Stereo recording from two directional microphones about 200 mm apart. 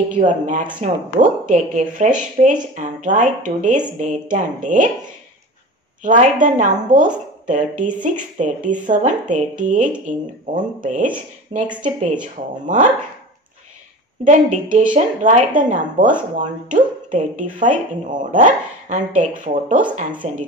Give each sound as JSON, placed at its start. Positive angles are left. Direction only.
{"t": 0.1, "sound": "speech", "side_deg": -40}
{"t": 6.0, "sound": "speech", "side_deg": -40}
{"t": 14.2, "sound": "speech", "side_deg": -40}